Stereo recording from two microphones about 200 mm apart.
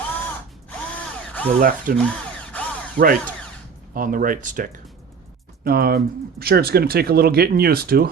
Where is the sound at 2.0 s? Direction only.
5° left (ahead or behind).